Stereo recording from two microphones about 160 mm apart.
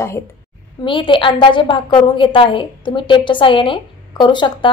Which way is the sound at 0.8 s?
30° left (ahead or behind).